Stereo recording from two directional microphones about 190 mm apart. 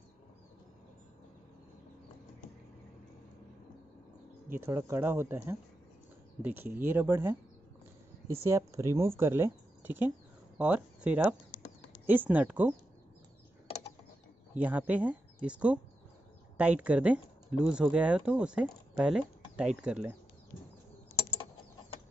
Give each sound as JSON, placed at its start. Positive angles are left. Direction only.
{"t": 4.6, "sound": "speech", "side_deg": -15}
{"t": 8.5, "sound": "speech", "side_deg": -15}
{"t": 14.5, "sound": "speech", "side_deg": -5}